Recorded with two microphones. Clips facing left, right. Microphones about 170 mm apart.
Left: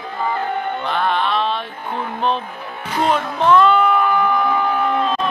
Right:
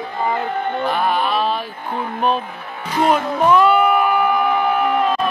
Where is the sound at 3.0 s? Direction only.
10° right (ahead or behind).